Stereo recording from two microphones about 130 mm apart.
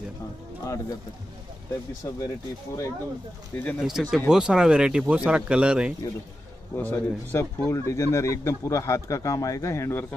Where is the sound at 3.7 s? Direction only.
5° right (ahead or behind).